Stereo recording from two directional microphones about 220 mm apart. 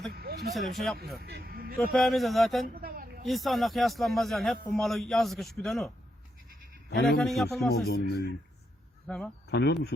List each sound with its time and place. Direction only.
0.1 s a sound: 45° right (ahead or behind)
0.5 s a man's voice: centre (ahead or behind)
1.2 s speech: 45° right (ahead or behind)
1.9 s a man's voice: centre (ahead or behind)
2.8 s a sound: 40° right (ahead or behind)
3.2 s a man's voice: centre (ahead or behind)
7.2 s a man's voice: centre (ahead or behind)
7.7 s speech: 45° left (ahead or behind)
9.0 s speech: 5° left (ahead or behind)
9.5 s speech: 50° left (ahead or behind)